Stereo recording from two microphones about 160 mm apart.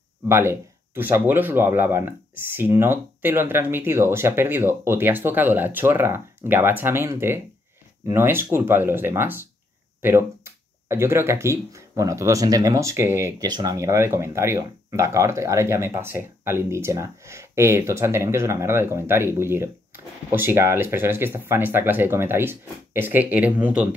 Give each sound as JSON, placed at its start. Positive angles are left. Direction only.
{"t": 0.3, "sound": "speech", "side_deg": -15}